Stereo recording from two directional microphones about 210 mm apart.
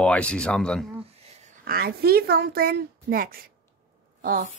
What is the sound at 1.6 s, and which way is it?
A woman's voice, 45° right (ahead or behind).